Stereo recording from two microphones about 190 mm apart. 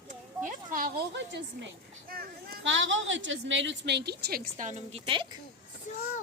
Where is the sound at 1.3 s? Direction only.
60° right (ahead or behind).